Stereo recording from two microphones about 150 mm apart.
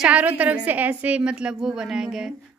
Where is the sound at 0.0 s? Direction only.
10° right (ahead or behind).